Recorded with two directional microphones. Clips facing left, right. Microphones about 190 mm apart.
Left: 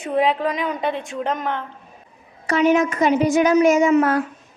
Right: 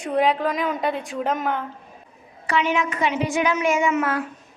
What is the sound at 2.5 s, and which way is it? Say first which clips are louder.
A woman's voice: left 6 dB; 40° left (ahead or behind).